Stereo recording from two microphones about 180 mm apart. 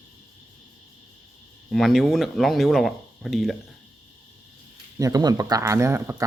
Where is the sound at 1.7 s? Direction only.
Centre (ahead or behind).